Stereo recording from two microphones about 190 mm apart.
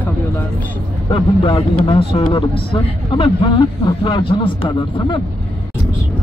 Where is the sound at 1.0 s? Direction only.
25° left (ahead or behind).